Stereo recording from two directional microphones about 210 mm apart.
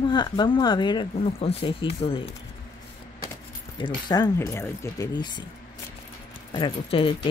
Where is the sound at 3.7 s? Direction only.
20° left (ahead or behind).